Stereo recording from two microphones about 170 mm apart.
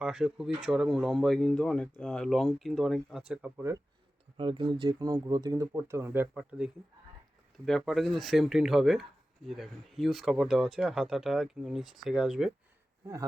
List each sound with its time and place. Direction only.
0.0 s speech: 5° right (ahead or behind)
4.4 s speech: 30° right (ahead or behind); by 12.5 s 5° right (ahead or behind)